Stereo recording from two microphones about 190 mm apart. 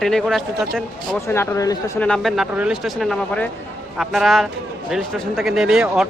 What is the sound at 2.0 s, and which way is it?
Speech, 5° left (ahead or behind).